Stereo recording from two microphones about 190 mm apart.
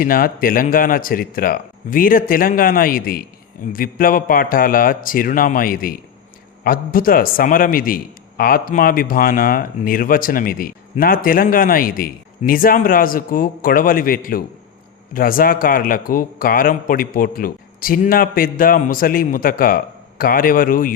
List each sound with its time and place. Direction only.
0.0 s a man's voice: 50° left (ahead or behind)